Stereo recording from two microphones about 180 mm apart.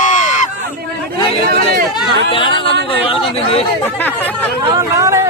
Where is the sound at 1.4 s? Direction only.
55° right (ahead or behind).